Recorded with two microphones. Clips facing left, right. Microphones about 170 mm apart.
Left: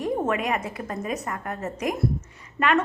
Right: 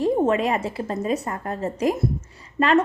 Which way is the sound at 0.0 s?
30° right (ahead or behind).